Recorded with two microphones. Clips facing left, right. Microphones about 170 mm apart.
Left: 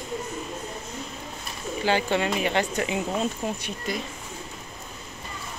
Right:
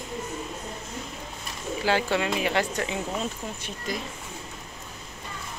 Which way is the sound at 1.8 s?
Centre (ahead or behind).